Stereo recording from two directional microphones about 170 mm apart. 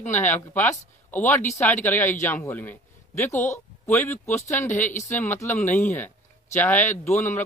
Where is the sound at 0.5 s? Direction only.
10° left (ahead or behind).